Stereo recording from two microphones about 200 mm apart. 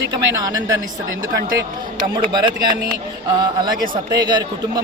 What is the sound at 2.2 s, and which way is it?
Speech, 25° right (ahead or behind).